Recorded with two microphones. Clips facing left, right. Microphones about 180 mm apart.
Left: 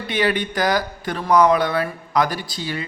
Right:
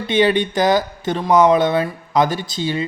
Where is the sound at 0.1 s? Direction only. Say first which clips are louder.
Right 5 dB; 25° right (ahead or behind).